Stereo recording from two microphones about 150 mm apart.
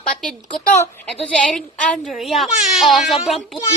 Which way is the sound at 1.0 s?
5° left (ahead or behind).